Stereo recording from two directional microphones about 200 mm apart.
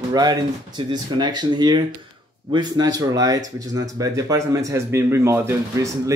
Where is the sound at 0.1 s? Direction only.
20° right (ahead or behind).